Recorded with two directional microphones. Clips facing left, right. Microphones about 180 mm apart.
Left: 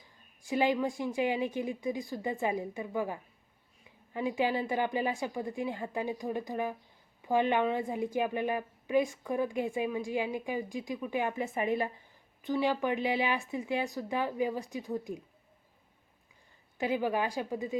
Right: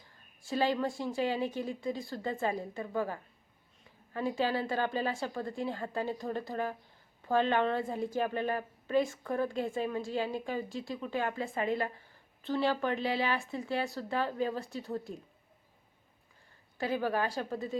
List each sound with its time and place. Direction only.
0.0 s a woman's voice: 15° left (ahead or behind)
16.7 s a woman's voice: 15° left (ahead or behind)